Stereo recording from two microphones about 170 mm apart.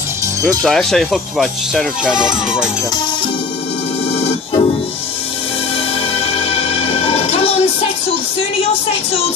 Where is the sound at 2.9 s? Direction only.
30° left (ahead or behind).